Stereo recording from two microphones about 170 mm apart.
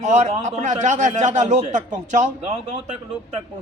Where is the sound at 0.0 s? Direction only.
45° right (ahead or behind).